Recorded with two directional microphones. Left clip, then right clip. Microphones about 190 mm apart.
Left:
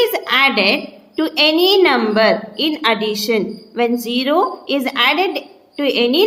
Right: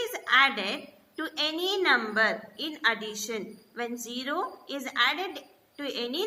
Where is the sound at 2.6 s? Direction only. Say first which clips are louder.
Left 9 dB; 45° left (ahead or behind).